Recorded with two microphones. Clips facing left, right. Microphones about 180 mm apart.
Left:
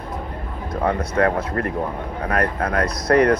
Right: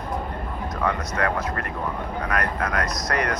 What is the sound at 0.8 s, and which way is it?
Speech, 30° left (ahead or behind).